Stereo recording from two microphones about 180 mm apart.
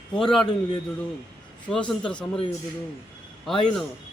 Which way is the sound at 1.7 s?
5° left (ahead or behind).